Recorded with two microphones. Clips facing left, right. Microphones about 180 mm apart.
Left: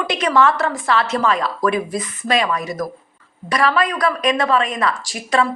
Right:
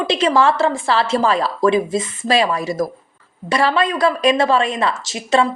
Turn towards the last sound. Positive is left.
turn(degrees=-25)  # may be behind; listen again after turning